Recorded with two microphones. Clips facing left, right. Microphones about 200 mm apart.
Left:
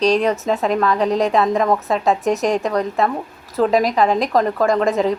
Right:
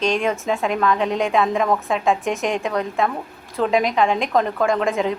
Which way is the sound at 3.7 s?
40° left (ahead or behind).